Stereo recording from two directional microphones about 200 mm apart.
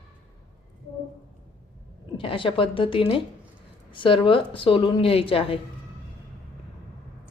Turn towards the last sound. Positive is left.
turn(degrees=30)  # may be behind; listen again after turning